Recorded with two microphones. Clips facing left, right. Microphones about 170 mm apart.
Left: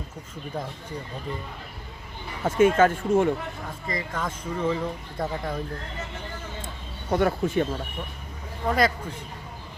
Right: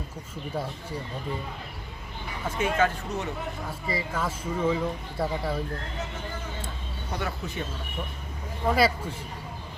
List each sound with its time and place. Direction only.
2.4 s speech: 50° left (ahead or behind)
3.7 s speech: 5° right (ahead or behind)
7.1 s speech: 50° left (ahead or behind)
8.6 s speech: 5° right (ahead or behind)